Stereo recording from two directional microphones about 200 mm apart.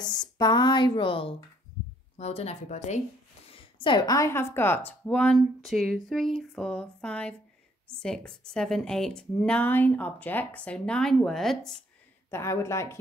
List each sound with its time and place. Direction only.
0.0 s speech: 20° left (ahead or behind)
3.5 s speech: 25° left (ahead or behind); by 11.7 s centre (ahead or behind)
12.3 s speech: 15° left (ahead or behind)